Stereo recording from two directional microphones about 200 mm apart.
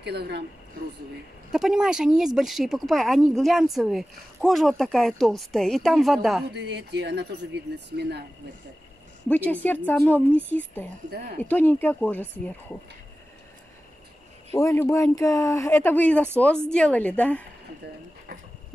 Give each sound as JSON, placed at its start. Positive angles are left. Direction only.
{"t": 0.0, "sound": "speech", "side_deg": -55}
{"t": 1.5, "sound": "speech", "side_deg": 0}
{"t": 6.5, "sound": "speech", "side_deg": -60}
{"t": 9.3, "sound": "speech", "side_deg": 10}
{"t": 11.1, "sound": "speech", "side_deg": -50}
{"t": 11.4, "sound": "speech", "side_deg": 10}
{"t": 14.5, "sound": "speech", "side_deg": 15}